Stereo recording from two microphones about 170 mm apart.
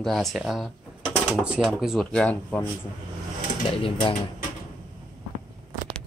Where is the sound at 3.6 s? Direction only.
30° left (ahead or behind).